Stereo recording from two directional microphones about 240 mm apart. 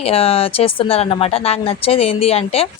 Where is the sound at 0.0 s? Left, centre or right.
Left.